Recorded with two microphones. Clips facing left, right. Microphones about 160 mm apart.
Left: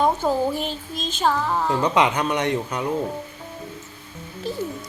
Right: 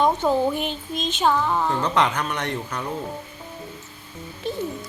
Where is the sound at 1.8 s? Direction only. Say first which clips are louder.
Left 2 dB; 20° left (ahead or behind).